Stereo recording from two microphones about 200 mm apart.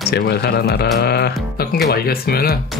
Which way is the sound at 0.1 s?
50° left (ahead or behind).